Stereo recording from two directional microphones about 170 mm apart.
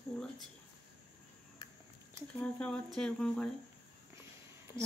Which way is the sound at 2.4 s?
5° left (ahead or behind).